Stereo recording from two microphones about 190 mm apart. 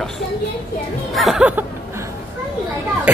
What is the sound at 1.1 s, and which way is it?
Speech, centre (ahead or behind).